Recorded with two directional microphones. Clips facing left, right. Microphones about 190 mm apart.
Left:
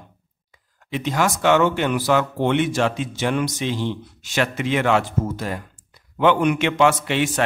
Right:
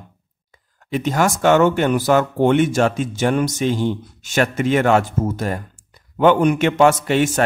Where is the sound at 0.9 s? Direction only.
45° right (ahead or behind).